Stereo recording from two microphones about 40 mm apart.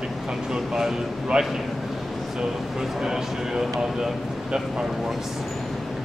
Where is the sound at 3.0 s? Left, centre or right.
Centre.